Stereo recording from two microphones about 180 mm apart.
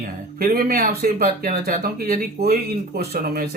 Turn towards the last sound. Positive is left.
turn(degrees=-55)  # may be behind; listen again after turning